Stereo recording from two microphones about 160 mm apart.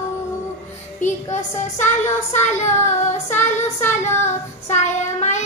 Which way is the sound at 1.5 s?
15° left (ahead or behind).